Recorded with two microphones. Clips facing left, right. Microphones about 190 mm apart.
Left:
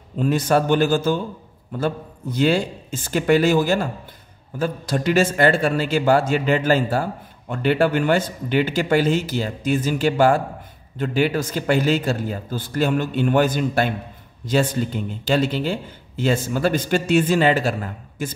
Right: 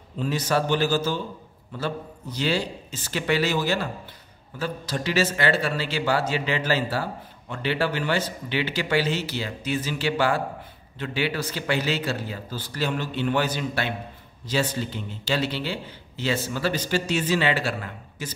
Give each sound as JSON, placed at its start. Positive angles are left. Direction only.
{"t": 0.2, "sound": "a man's voice", "side_deg": 50}